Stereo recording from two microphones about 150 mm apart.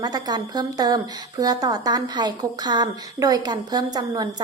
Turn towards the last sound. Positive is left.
turn(degrees=-25)  # may be behind; listen again after turning